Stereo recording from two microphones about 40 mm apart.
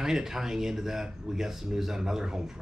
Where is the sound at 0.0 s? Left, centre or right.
Centre.